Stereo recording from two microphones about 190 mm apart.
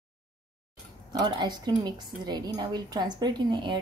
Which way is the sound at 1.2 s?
20° right (ahead or behind).